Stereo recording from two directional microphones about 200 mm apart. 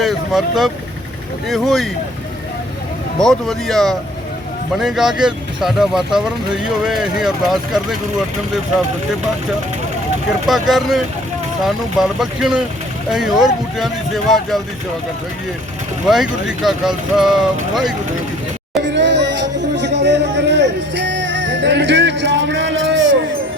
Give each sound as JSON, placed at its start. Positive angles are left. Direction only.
{"t": 0.0, "sound": "speech", "side_deg": 0}
{"t": 3.2, "sound": "speech", "side_deg": 0}
{"t": 10.4, "sound": "speech", "side_deg": 0}
{"t": 16.5, "sound": "speech", "side_deg": 0}
{"t": 18.9, "sound": "music", "side_deg": -60}